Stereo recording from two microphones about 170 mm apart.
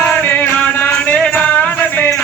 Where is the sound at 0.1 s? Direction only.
10° left (ahead or behind).